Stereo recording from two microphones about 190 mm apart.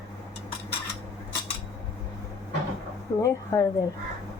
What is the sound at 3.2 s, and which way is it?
Speech, 15° left (ahead or behind).